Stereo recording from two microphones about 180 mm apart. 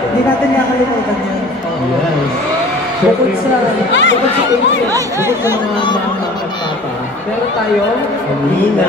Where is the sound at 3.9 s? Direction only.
90° left.